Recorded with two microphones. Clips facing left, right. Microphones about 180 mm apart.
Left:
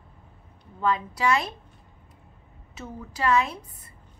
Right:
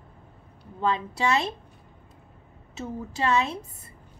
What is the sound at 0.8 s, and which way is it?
Speech, 25° right (ahead or behind).